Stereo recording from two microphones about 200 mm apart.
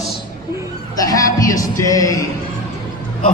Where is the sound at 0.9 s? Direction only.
15° left (ahead or behind).